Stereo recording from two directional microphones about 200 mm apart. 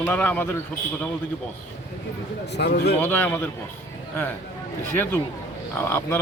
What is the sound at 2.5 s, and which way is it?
Speech, 55° left (ahead or behind).